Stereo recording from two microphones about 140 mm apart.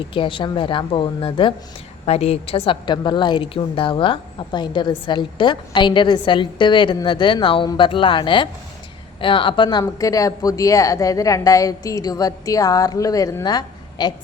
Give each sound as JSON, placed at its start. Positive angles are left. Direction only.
{"t": 0.0, "sound": "a woman's voice", "side_deg": 35}